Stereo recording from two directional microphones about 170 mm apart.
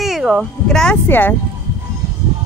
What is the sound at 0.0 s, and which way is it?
Speech, 5° right (ahead or behind).